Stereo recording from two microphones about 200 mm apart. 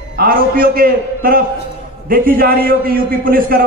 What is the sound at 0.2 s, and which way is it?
A man's voice, 45° right (ahead or behind).